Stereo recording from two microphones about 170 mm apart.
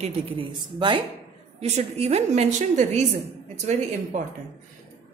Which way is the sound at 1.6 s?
40° right (ahead or behind).